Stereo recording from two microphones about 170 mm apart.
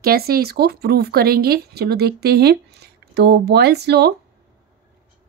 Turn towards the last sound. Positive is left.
turn(degrees=-75)  # may be behind; listen again after turning